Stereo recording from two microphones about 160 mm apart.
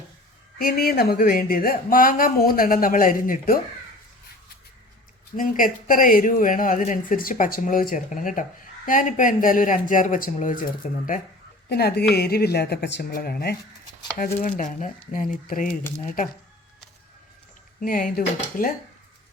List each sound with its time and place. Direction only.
0.6 s speech: 70° left (ahead or behind)
5.4 s speech: 60° left (ahead or behind)
11.7 s speech: 85° left
14.4 s speech: 55° left (ahead or behind)
17.7 s speech: 60° left (ahead or behind)